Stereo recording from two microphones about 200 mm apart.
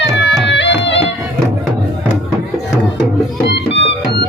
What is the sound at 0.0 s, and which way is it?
Music, 60° left (ahead or behind).